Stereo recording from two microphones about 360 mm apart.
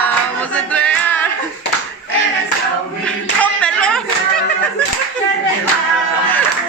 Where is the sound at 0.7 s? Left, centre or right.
Centre.